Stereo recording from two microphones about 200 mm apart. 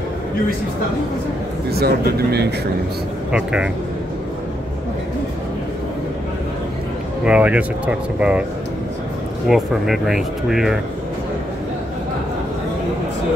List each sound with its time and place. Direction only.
1.7 s a man's voice: 50° right (ahead or behind)
3.3 s speech: 5° right (ahead or behind)
7.2 s speech: 5° right (ahead or behind)
9.5 s speech: centre (ahead or behind)